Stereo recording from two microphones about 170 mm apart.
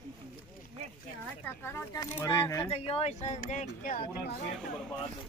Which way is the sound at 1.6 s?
15° left (ahead or behind).